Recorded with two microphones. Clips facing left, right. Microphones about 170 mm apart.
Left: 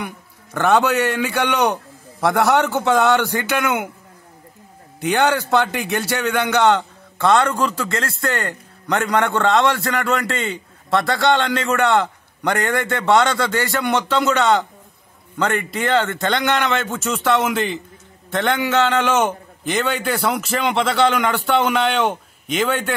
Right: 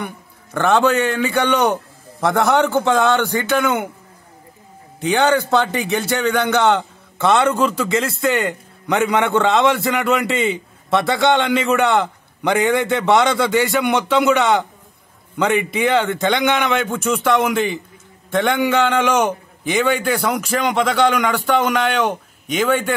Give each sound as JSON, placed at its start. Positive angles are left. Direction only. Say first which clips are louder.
{"t": 0.0, "sound": "a man's voice", "louder": "right 1 dB", "side_deg": 5}
{"t": 5.0, "sound": "a man's voice", "louder": "right 2 dB", "side_deg": 0}
{"t": 7.2, "sound": "a man's voice", "louder": "right 1 dB", "side_deg": -20}
{"t": 7.5, "sound": "a man's voice", "louder": "right 4 dB", "side_deg": 0}
{"t": 9.3, "sound": "a man's voice", "louder": "right 1 dB", "side_deg": -15}
{"t": 9.7, "sound": "a man's voice", "louder": "right 3 dB", "side_deg": 0}
{"t": 20.4, "sound": "a man's voice", "louder": "right 1 dB", "side_deg": -10}